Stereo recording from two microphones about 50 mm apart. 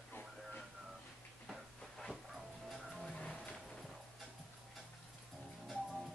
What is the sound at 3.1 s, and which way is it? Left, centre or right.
Music, centre.